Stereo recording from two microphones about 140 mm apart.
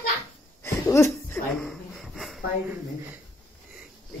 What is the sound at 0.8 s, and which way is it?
Laughter, 20° left (ahead or behind).